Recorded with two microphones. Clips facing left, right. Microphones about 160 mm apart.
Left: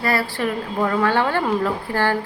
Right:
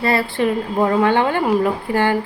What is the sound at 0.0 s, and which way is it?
A woman's voice, 25° right (ahead or behind).